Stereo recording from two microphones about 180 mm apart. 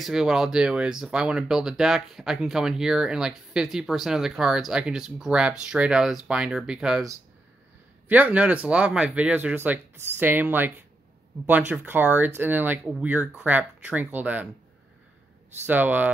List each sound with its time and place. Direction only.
0.0 s speech: 5° right (ahead or behind)
8.1 s speech: 10° right (ahead or behind)
15.6 s speech: 10° right (ahead or behind)